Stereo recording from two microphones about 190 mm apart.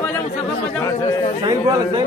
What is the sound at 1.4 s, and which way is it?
Speech, 20° right (ahead or behind).